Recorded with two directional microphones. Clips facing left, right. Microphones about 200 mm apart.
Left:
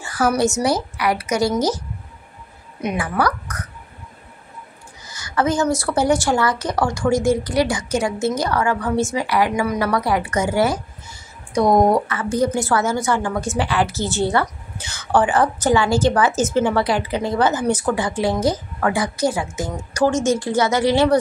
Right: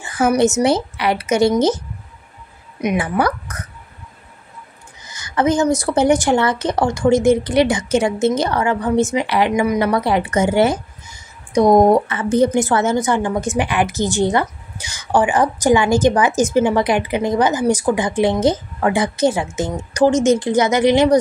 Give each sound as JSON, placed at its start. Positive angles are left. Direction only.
{"t": 0.0, "sound": "a woman's voice", "side_deg": -20}
{"t": 3.0, "sound": "a woman's voice", "side_deg": -25}
{"t": 5.0, "sound": "a woman's voice", "side_deg": -20}